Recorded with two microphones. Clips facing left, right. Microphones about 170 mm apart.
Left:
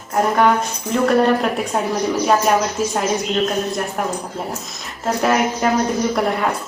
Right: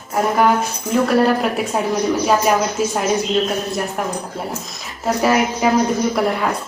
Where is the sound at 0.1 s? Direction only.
5° right (ahead or behind).